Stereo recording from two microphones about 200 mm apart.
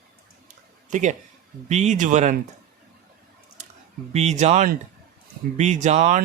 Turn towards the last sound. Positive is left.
turn(degrees=-35)  # may be behind; listen again after turning